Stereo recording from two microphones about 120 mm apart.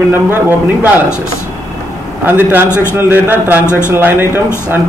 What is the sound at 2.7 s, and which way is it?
Speech, 20° left (ahead or behind).